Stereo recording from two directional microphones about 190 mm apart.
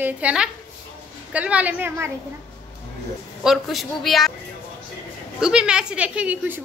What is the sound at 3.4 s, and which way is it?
Speech, centre (ahead or behind).